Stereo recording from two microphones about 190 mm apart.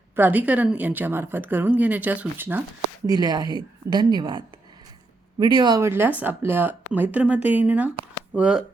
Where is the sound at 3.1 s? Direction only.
20° right (ahead or behind).